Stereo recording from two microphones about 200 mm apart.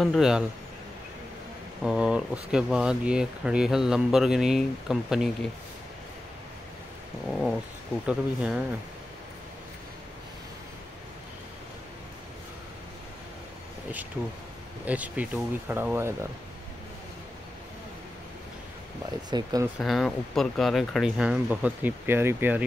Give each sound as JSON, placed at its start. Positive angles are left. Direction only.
{"t": 0.0, "sound": "speech", "side_deg": 0}
{"t": 1.8, "sound": "speech", "side_deg": -5}
{"t": 7.2, "sound": "speech", "side_deg": 0}
{"t": 14.9, "sound": "speech", "side_deg": -5}
{"t": 19.3, "sound": "speech", "side_deg": -20}
{"t": 19.8, "sound": "speech", "side_deg": 0}